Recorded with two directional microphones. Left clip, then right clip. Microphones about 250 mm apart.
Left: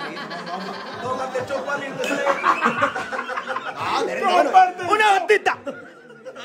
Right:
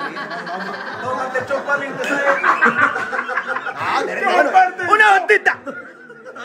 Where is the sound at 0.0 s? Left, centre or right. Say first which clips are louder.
Right 5 dB; centre.